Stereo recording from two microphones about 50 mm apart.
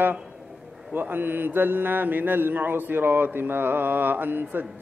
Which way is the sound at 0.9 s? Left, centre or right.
Right.